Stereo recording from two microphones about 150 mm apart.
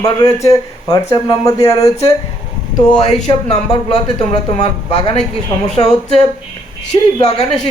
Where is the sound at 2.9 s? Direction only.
35° left (ahead or behind).